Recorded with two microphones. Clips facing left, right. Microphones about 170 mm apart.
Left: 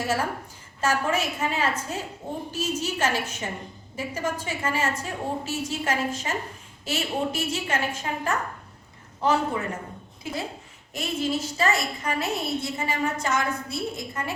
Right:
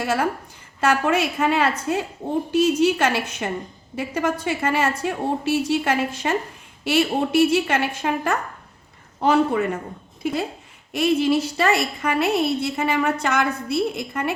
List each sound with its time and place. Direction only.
0.0 s a woman's voice: 65° right (ahead or behind)
10.9 s a woman's voice: 65° right (ahead or behind)